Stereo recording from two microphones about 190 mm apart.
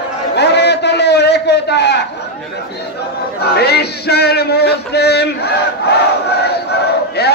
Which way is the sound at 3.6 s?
60° left (ahead or behind).